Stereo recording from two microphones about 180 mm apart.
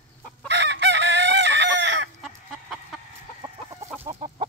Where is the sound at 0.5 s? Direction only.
75° right (ahead or behind).